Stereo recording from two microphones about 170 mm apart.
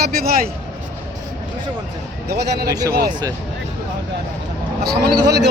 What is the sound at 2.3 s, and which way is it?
Speech, 70° right (ahead or behind).